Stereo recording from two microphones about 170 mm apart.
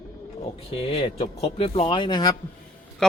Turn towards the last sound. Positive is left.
turn(degrees=5)  # may be behind; listen again after turning